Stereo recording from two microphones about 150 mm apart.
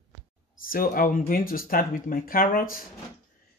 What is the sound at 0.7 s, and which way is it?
Speech, 70° left (ahead or behind).